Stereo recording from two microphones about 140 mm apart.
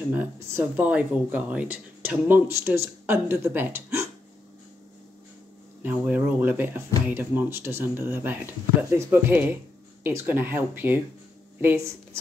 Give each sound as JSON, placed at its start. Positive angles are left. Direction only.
{"t": 0.1, "sound": "speech", "side_deg": -15}
{"t": 5.8, "sound": "speech", "side_deg": -10}